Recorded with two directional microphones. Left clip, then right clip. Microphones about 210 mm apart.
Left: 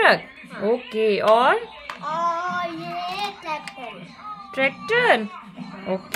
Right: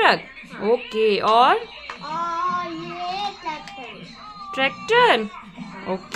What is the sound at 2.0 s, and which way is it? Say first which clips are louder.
Speech: left 3 dB; 5° left (ahead or behind).